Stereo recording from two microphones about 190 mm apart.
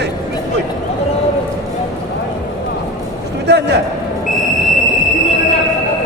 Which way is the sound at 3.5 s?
60° right (ahead or behind).